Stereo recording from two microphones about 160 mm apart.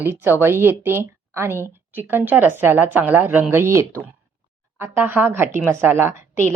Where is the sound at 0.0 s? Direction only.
15° right (ahead or behind).